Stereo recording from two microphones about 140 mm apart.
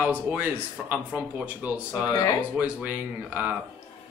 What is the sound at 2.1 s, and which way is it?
Speech, 25° left (ahead or behind).